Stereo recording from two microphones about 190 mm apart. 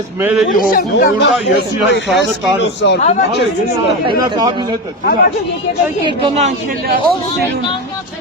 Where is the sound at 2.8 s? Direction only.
65° left (ahead or behind).